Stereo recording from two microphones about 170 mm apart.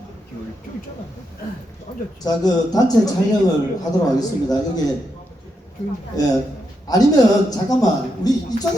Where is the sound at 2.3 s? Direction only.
20° left (ahead or behind).